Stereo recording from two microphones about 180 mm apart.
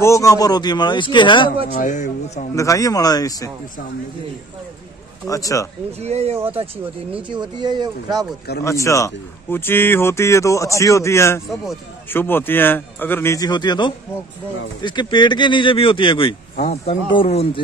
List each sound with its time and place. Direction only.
0.0 s speech: 15° left (ahead or behind)
1.7 s speech: 45° left (ahead or behind)
2.5 s speech: 20° left (ahead or behind)
5.3 s speech: 20° left (ahead or behind)
5.9 s speech: 35° right (ahead or behind)
7.2 s speech: 25° right (ahead or behind)
8.6 s a man's voice: 15° left (ahead or behind)